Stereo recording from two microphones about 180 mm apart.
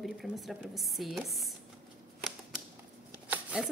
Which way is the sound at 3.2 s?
5° right (ahead or behind).